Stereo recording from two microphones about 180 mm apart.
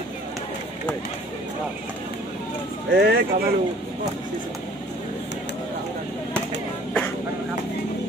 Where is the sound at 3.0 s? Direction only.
60° right (ahead or behind).